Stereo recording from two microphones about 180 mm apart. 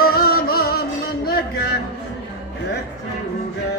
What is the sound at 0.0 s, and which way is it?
Music, 55° left (ahead or behind).